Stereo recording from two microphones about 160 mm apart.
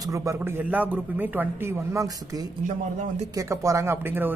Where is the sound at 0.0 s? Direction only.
20° right (ahead or behind).